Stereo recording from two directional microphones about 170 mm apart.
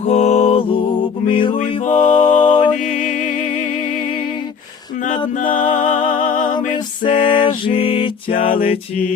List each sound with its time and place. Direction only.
0.0 s music: 40° left (ahead or behind)
1.8 s a capella: 45° left (ahead or behind)
5.4 s music: 50° left (ahead or behind)
7.0 s music: 30° left (ahead or behind)